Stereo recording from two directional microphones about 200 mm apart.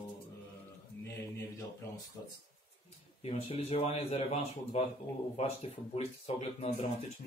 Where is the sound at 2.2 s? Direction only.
15° left (ahead or behind).